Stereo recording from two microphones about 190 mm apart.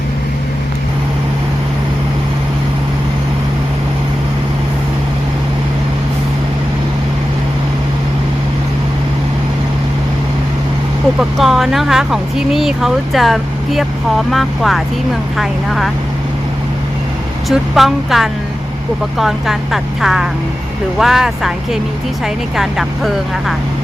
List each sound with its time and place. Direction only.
11.2 s speech: centre (ahead or behind)
17.5 s speech: centre (ahead or behind)